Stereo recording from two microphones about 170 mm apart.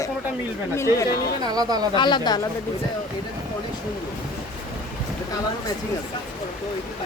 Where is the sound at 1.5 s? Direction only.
25° right (ahead or behind).